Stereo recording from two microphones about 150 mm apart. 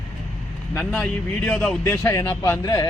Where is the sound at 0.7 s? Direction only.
10° left (ahead or behind).